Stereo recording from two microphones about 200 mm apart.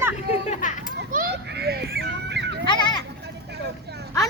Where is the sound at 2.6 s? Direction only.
20° left (ahead or behind).